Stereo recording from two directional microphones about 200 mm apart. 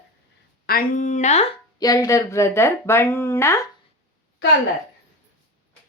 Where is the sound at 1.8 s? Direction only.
20° left (ahead or behind).